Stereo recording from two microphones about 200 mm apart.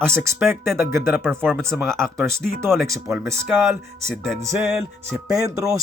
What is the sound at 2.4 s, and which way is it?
Music, centre (ahead or behind).